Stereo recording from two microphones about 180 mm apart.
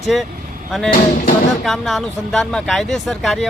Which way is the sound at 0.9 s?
50° left (ahead or behind).